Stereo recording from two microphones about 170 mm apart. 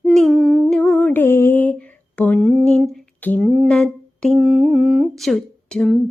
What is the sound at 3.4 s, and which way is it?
Humming, 5° right (ahead or behind).